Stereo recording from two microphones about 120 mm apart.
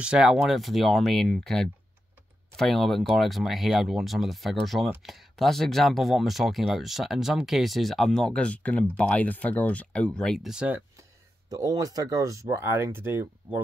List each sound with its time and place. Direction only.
0.0 s speech: 5° right (ahead or behind)
11.0 s speech: 30° right (ahead or behind)